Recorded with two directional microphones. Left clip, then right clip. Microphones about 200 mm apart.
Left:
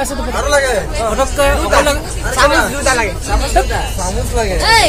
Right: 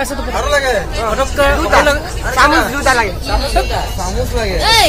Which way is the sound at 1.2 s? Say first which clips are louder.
Even; 10° left (ahead or behind).